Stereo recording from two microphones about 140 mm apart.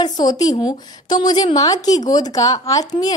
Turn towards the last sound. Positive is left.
turn(degrees=25)  # may be behind; listen again after turning